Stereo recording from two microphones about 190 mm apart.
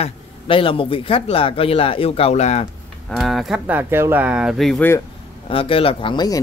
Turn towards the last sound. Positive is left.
turn(degrees=20)  # may be behind; listen again after turning